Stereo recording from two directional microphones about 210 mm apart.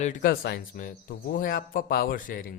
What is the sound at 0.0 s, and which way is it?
A man's voice, 40° left (ahead or behind).